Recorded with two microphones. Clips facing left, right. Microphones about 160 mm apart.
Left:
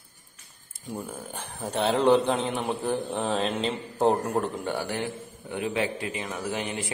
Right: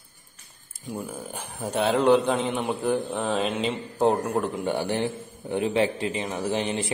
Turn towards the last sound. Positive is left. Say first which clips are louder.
# right 5 dB
turn(degrees=-25)  # may be behind; listen again after turning